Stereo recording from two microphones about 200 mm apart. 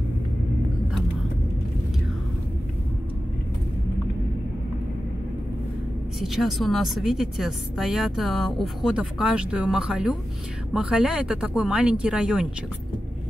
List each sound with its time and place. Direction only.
6.1 s a woman's voice: centre (ahead or behind)